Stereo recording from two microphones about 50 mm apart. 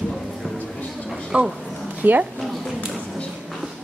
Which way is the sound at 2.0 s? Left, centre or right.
Right.